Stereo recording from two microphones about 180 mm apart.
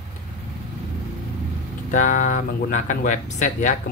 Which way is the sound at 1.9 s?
45° left (ahead or behind).